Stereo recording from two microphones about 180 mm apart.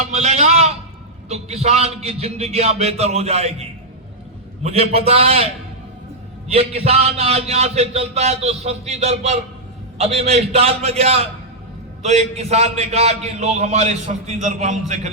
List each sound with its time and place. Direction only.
0.0 s a sound: 35° right (ahead or behind)
1.3 s a man's voice: 35° right (ahead or behind)
6.5 s a man's voice: 35° right (ahead or behind)